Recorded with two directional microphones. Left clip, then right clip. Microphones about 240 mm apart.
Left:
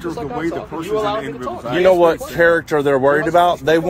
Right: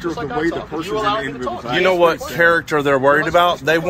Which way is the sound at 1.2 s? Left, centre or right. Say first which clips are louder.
Right 1 dB; left.